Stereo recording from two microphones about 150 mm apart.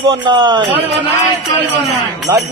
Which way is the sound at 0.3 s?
30° right (ahead or behind).